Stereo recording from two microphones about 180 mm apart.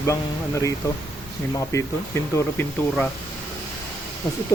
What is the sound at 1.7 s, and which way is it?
Speech, 15° left (ahead or behind).